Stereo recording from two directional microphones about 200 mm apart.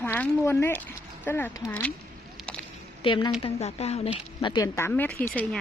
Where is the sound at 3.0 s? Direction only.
25° left (ahead or behind).